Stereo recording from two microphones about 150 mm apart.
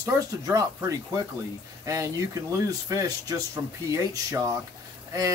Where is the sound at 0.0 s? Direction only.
20° right (ahead or behind).